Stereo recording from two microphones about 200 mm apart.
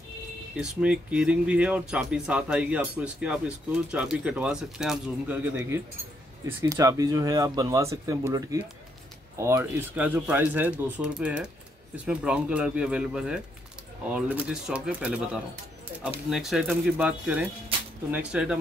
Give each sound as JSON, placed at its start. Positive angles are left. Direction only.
{"t": 0.6, "sound": "speech", "side_deg": -5}